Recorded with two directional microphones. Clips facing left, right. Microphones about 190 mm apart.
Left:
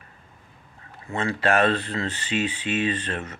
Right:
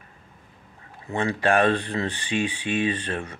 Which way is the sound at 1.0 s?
15° right (ahead or behind).